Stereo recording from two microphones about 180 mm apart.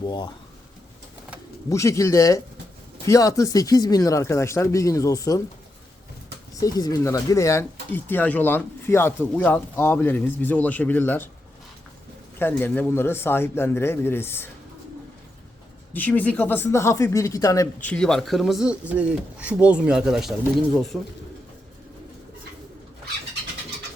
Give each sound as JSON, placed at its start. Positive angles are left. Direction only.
{"t": 0.0, "sound": "speech", "side_deg": 25}
{"t": 1.7, "sound": "speech", "side_deg": 15}
{"t": 6.6, "sound": "speech", "side_deg": 20}
{"t": 12.4, "sound": "speech", "side_deg": 10}
{"t": 15.9, "sound": "speech", "side_deg": 10}